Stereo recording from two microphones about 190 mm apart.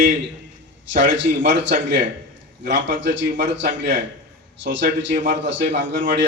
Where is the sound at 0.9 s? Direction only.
70° right (ahead or behind).